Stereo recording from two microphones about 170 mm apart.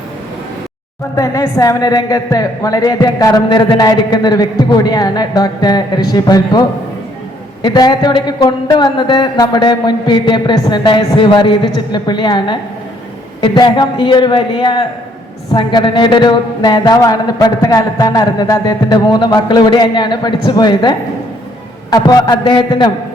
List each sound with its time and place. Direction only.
1.1 s a woman's voice: 20° left (ahead or behind)